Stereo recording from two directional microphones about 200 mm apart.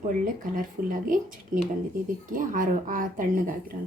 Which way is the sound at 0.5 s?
45° right (ahead or behind).